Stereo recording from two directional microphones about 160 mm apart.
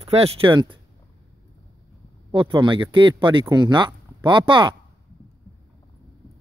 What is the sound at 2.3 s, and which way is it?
Speech, 30° right (ahead or behind).